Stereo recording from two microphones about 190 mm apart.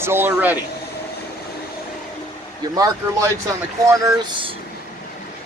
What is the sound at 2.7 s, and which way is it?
Speech, 20° right (ahead or behind).